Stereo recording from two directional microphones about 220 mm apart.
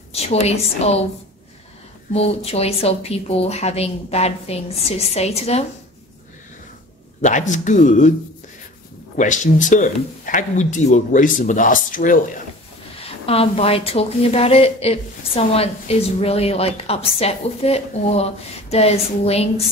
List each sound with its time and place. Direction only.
0.1 s a woman's voice: 30° left (ahead or behind)
2.1 s a woman's voice: 30° left (ahead or behind)
7.2 s speech: 35° left (ahead or behind)
9.1 s speech: 35° left (ahead or behind)
12.9 s a woman's voice: 25° left (ahead or behind)